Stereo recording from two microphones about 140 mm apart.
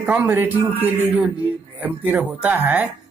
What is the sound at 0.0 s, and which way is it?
Speech, 10° right (ahead or behind).